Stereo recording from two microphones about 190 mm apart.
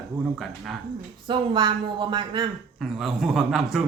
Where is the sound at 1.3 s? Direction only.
25° right (ahead or behind).